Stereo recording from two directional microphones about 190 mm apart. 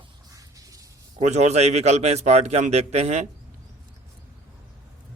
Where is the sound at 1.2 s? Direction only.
35° right (ahead or behind).